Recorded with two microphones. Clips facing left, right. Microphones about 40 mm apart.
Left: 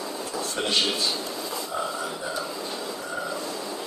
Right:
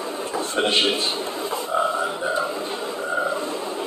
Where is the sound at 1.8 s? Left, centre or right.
Right.